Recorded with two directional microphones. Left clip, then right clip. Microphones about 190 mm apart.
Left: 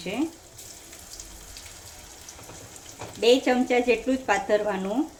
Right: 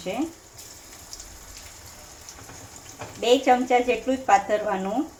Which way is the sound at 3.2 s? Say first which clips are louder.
Right 1 dB; 25° left (ahead or behind).